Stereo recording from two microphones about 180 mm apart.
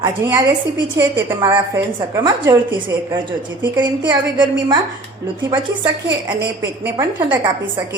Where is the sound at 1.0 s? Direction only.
15° right (ahead or behind).